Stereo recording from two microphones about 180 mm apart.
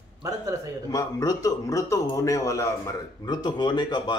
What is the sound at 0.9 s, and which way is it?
A man's voice, 20° left (ahead or behind).